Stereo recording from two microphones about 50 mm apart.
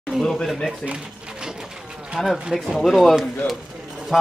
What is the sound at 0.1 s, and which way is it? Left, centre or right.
Speech, centre.